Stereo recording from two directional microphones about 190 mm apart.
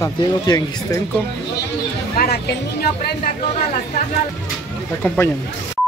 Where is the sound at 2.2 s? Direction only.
50° left (ahead or behind).